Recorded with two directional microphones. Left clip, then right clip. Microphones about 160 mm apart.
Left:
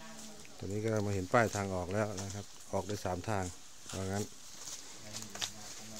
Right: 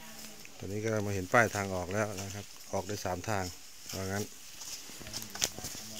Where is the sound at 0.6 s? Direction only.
5° left (ahead or behind).